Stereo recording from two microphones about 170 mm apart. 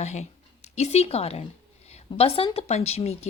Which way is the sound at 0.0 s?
40° left (ahead or behind).